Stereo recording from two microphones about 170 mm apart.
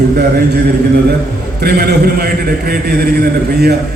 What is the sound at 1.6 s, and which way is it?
A man's voice, 70° right (ahead or behind).